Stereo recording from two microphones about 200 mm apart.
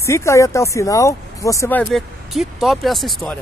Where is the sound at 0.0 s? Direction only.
15° left (ahead or behind).